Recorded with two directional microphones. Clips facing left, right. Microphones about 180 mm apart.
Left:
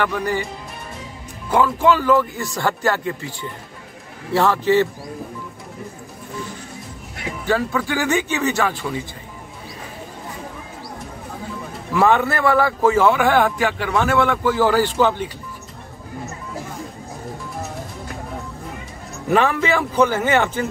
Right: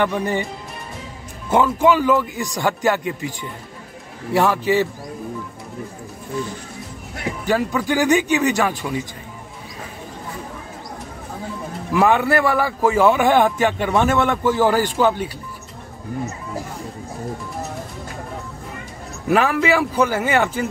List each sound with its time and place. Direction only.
0.0 s speech: 20° right (ahead or behind)
1.5 s a man's voice: 20° right (ahead or behind)
7.4 s a man's voice: 15° right (ahead or behind)
11.9 s a man's voice: 15° right (ahead or behind)
19.2 s a man's voice: 5° right (ahead or behind)